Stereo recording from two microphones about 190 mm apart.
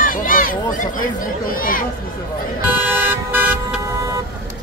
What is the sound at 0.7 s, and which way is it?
Speech, 45° left (ahead or behind).